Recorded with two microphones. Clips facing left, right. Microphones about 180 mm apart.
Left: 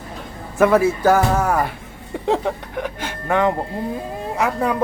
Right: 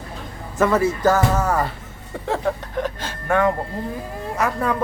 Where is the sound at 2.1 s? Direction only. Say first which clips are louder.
Left 4 dB; 15° left (ahead or behind).